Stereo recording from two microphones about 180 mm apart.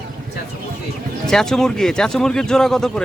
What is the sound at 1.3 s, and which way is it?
Speech, centre (ahead or behind).